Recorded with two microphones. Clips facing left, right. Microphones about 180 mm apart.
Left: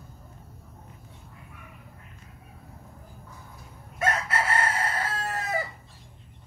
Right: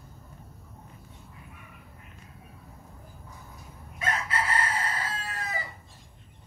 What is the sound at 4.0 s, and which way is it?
Chicken, 50° left (ahead or behind).